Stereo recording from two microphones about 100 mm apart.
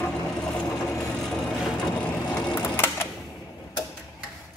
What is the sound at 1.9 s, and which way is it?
Vehicle, 15° left (ahead or behind).